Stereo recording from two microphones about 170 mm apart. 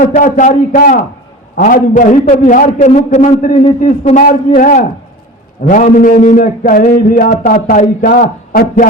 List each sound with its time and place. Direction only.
0.0 s a man's voice: 50° left (ahead or behind)